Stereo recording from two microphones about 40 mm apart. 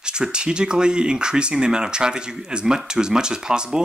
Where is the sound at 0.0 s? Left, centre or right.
Right.